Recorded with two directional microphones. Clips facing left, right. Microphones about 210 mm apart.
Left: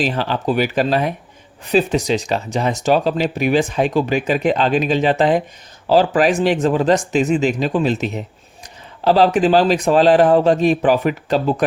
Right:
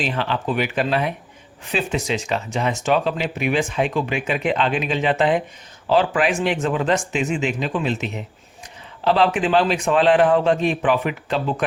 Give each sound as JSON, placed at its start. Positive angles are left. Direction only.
{"t": 0.0, "sound": "speech", "side_deg": 40}